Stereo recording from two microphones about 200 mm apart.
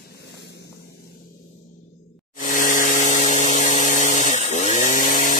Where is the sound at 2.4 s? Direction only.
40° left (ahead or behind).